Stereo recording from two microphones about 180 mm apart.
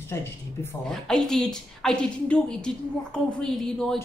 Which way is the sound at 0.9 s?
5° left (ahead or behind).